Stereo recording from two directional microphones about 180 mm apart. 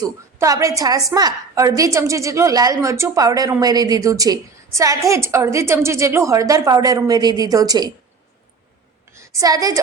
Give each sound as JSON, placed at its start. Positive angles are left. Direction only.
{"t": 0.0, "sound": "a woman's voice", "side_deg": -20}
{"t": 9.1, "sound": "a woman's voice", "side_deg": -15}